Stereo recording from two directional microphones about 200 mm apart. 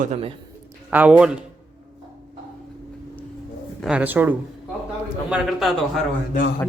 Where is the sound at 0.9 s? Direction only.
5° right (ahead or behind).